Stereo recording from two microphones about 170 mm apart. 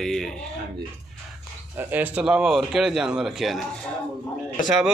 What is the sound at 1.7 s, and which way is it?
A man's voice, 10° right (ahead or behind).